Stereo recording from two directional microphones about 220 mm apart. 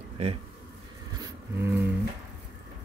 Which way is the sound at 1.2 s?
10° right (ahead or behind).